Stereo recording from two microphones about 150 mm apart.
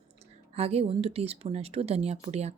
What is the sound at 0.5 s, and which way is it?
Speech, 45° right (ahead or behind).